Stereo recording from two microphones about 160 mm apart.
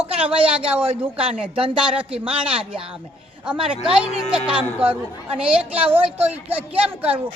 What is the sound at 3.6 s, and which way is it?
Speech, 5° right (ahead or behind).